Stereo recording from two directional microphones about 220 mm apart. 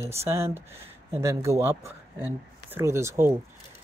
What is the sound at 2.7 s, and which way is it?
Speech, 10° right (ahead or behind).